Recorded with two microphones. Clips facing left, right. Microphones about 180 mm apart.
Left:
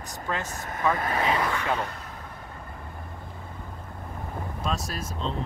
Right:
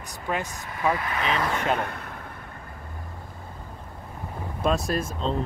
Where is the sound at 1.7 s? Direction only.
60° right (ahead or behind).